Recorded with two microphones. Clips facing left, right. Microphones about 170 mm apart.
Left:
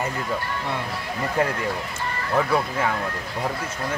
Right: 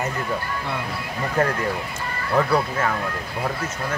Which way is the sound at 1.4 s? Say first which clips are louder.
Right 2 dB; 15° left (ahead or behind).